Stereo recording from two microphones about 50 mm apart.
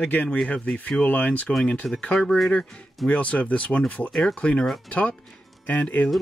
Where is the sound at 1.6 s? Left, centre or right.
Centre.